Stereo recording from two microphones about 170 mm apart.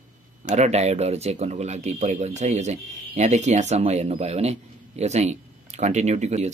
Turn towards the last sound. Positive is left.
turn(degrees=-40)  # may be behind; listen again after turning